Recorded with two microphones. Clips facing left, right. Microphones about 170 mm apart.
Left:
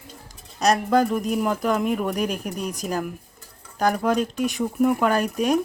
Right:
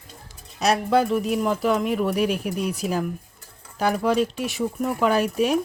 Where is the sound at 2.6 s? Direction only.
40° left (ahead or behind).